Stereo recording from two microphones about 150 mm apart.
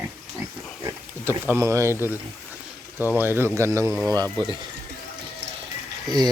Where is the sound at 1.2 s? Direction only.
15° right (ahead or behind).